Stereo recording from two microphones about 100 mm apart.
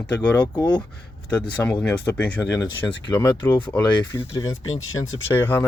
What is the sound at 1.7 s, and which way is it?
Speech, 20° left (ahead or behind).